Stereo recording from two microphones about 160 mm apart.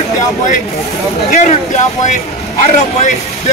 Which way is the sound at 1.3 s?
45° left (ahead or behind).